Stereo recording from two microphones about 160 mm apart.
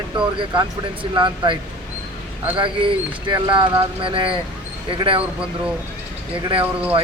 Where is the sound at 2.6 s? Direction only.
30° right (ahead or behind).